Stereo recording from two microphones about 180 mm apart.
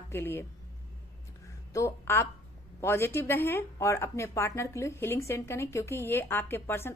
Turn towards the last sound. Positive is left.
turn(degrees=15)  # may be behind; listen again after turning